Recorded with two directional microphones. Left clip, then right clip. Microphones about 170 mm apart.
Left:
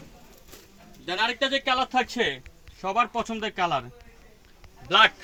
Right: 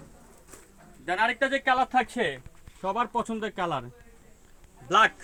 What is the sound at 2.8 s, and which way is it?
Speech, 40° right (ahead or behind).